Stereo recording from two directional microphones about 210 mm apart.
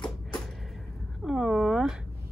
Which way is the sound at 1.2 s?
Centre (ahead or behind).